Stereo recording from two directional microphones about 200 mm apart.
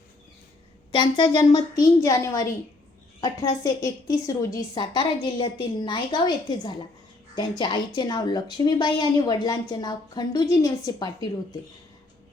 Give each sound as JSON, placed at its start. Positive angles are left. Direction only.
{"t": 0.9, "sound": "a woman's voice", "side_deg": 20}